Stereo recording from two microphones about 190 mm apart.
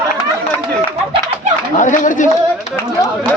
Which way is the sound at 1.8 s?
40° left (ahead or behind).